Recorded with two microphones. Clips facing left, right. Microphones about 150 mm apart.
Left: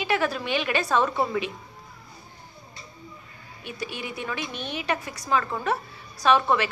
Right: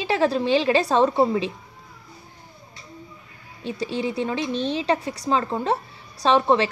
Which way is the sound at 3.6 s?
30° right (ahead or behind).